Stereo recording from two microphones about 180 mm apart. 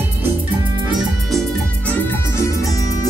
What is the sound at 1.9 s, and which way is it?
Music, 10° left (ahead or behind).